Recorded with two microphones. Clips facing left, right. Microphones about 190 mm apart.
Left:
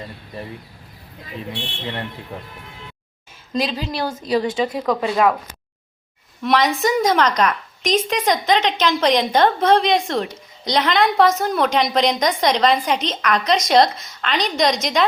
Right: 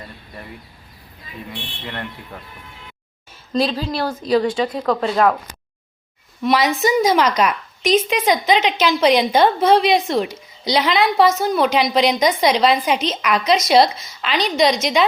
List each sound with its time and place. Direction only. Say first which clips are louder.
3.8 s a woman's voice: right 2 dB; 20° left (ahead or behind)
4.7 s speech: right 1 dB; 5° left (ahead or behind)
6.4 s a woman's voice: right 1 dB; 5° right (ahead or behind)